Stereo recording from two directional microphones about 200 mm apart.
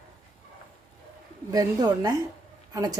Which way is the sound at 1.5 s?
20° right (ahead or behind).